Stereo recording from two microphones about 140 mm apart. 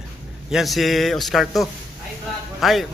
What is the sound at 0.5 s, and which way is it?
Speech, centre (ahead or behind).